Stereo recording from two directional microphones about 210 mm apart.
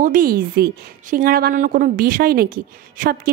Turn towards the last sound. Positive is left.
turn(degrees=-45)  # may be behind; listen again after turning